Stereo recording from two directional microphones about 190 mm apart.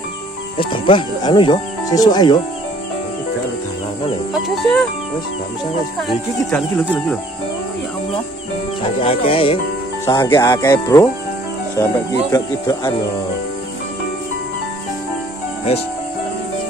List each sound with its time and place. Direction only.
0.6 s speech: 25° left (ahead or behind)
4.3 s speech: centre (ahead or behind)
6.0 s speech: 5° left (ahead or behind)
9.0 s speech: 30° left (ahead or behind)
10.0 s speech: 15° left (ahead or behind)